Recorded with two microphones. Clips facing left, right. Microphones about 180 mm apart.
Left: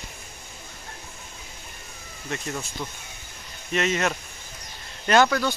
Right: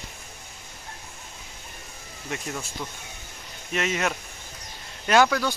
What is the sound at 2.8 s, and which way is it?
Speech, 5° right (ahead or behind).